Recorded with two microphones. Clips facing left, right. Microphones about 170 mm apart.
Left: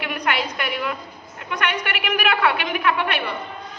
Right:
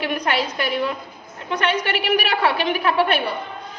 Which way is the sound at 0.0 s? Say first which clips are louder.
Right 2 dB; 30° right (ahead or behind).